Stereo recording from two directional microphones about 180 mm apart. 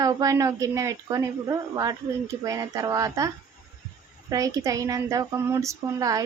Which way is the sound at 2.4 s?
20° right (ahead or behind).